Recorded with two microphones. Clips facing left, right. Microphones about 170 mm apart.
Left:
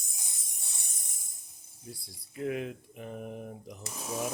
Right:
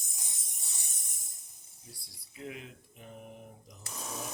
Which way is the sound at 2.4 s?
60° left (ahead or behind).